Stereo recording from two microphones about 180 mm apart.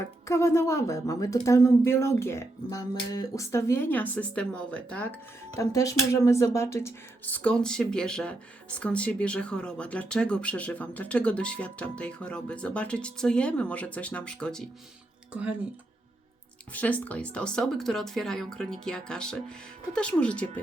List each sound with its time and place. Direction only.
0.3 s speech: 15° left (ahead or behind)
5.5 s speech: 15° left (ahead or behind)
15.3 s speech: 5° right (ahead or behind)
16.7 s speech: 10° left (ahead or behind)